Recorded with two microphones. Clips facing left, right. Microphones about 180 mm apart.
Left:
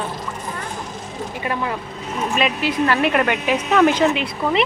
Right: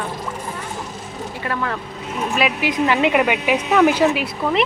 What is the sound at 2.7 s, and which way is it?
Speech, 15° right (ahead or behind).